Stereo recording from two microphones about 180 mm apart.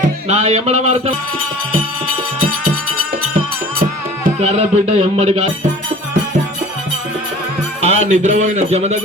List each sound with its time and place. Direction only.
0.3 s speech: 35° right (ahead or behind)
4.4 s speech: 35° right (ahead or behind)
7.8 s speech: 40° right (ahead or behind)